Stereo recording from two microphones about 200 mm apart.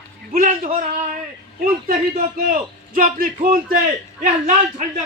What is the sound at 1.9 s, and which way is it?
A man's voice, 40° right (ahead or behind).